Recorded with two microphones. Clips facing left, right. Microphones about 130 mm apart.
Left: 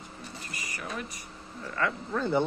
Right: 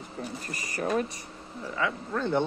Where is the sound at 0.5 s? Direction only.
35° right (ahead or behind).